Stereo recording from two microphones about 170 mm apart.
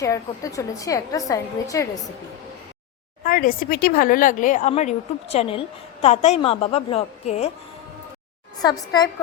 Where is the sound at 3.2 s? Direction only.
55° left (ahead or behind); by 7.5 s 40° left (ahead or behind).